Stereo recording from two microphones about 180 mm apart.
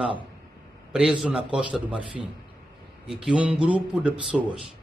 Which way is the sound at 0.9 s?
Centre (ahead or behind).